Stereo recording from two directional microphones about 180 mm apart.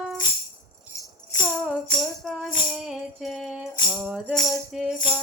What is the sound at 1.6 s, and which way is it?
Music, centre (ahead or behind).